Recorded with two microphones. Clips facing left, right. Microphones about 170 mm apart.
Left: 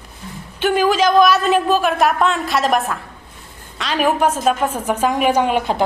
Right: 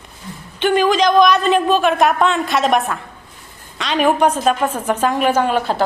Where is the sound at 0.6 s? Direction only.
5° left (ahead or behind).